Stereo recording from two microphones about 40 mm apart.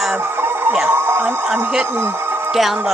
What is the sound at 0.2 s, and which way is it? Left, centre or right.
Music, right.